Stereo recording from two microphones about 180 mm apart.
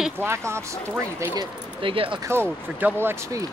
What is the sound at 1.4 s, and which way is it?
Speech, 30° right (ahead or behind).